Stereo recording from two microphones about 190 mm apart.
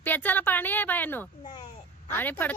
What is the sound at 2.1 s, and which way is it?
Speech, 10° left (ahead or behind).